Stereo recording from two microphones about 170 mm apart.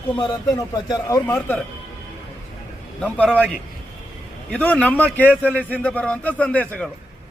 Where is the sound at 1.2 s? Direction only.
10° left (ahead or behind).